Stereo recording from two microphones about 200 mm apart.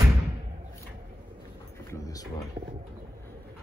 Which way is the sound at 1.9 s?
15° left (ahead or behind).